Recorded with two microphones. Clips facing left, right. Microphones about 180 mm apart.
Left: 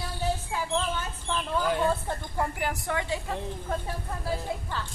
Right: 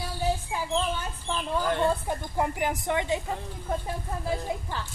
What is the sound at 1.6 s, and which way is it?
Speech, 5° left (ahead or behind).